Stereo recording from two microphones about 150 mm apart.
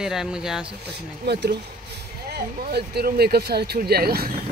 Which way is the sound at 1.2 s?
90° right.